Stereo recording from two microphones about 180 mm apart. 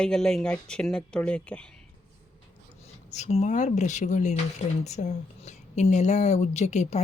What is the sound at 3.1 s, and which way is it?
Speech, 40° left (ahead or behind).